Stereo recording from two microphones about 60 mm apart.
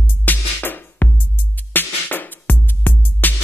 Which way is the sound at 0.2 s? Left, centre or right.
Left.